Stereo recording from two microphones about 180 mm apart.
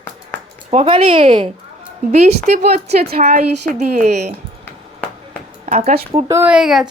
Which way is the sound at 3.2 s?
45° right (ahead or behind).